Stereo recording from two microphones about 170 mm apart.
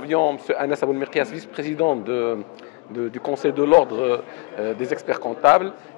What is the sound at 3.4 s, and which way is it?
A man's voice, 10° left (ahead or behind).